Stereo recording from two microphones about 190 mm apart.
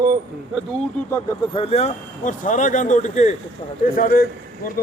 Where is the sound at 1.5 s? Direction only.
30° left (ahead or behind).